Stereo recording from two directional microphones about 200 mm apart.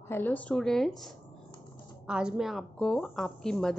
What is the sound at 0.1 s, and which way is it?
A woman's voice, 10° left (ahead or behind).